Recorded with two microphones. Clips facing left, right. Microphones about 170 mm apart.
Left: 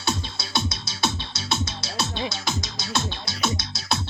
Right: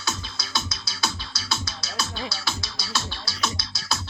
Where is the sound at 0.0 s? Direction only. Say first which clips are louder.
Left 4 dB; 30° left (ahead or behind).